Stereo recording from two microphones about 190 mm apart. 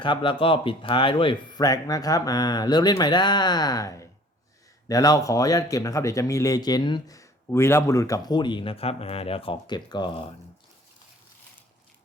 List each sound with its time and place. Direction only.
0.0 s speech: 25° left (ahead or behind)